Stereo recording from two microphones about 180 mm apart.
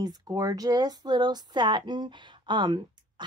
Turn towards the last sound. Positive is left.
turn(degrees=-25)  # may be behind; listen again after turning